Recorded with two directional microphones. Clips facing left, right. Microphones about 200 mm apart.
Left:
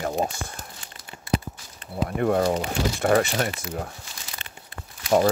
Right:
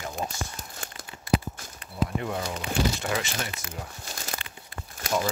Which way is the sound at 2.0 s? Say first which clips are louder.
Left 10 dB; 50° left (ahead or behind).